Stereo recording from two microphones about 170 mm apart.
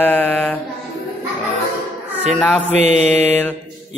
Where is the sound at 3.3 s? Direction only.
10° left (ahead or behind).